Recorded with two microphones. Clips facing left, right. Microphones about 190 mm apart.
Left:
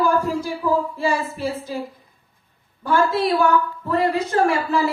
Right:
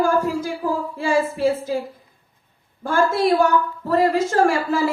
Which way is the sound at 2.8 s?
45° right (ahead or behind).